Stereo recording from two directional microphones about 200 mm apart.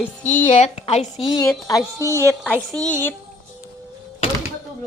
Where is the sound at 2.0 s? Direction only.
15° right (ahead or behind).